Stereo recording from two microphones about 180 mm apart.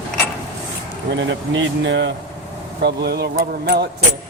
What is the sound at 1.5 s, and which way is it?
Speech, 85° right.